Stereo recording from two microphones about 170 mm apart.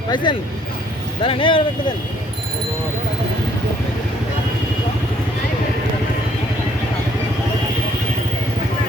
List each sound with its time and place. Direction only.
0.1 s speech: 25° left (ahead or behind)